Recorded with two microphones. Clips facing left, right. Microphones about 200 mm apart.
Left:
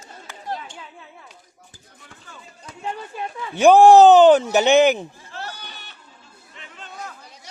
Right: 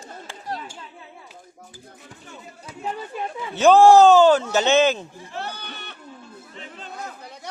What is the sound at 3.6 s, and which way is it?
Speech, 15° left (ahead or behind).